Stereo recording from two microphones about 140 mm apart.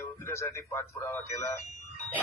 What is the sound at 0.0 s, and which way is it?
A man's voice, 20° left (ahead or behind).